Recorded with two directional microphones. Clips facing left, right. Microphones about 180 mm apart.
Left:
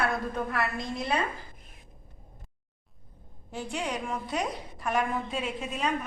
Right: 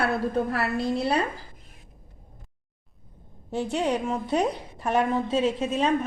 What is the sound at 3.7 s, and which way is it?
A woman's voice, 30° right (ahead or behind).